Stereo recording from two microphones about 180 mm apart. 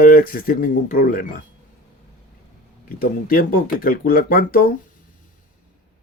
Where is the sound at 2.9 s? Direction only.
55° left (ahead or behind).